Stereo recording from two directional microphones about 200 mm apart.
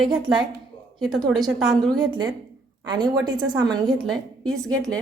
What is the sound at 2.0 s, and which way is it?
A woman's voice, 20° right (ahead or behind).